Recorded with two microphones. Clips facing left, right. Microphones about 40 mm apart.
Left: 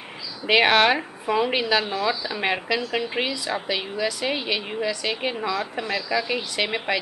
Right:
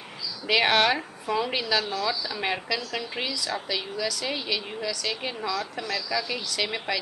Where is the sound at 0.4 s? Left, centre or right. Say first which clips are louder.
Left 4 dB; left.